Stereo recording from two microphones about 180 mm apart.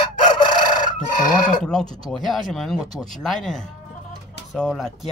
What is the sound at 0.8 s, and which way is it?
Chicken, 45° left (ahead or behind).